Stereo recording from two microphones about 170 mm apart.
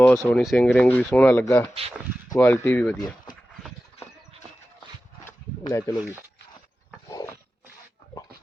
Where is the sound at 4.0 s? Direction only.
35° left (ahead or behind).